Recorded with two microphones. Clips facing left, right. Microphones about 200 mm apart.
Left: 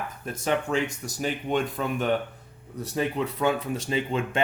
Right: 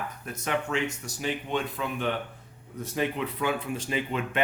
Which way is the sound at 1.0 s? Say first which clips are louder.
Left 3 dB; 45° left (ahead or behind).